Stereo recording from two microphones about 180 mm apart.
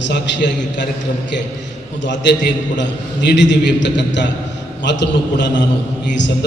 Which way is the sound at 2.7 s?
80° left.